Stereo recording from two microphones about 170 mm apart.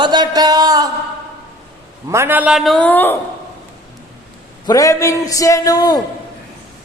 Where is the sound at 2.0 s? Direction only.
15° right (ahead or behind); by 3.2 s 10° left (ahead or behind).